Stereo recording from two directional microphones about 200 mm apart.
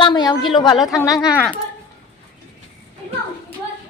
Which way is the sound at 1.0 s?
20° left (ahead or behind).